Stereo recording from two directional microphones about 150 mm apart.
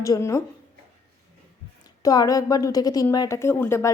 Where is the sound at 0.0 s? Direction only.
20° left (ahead or behind).